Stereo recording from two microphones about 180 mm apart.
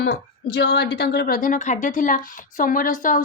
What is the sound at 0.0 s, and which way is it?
A woman's voice, 70° left (ahead or behind).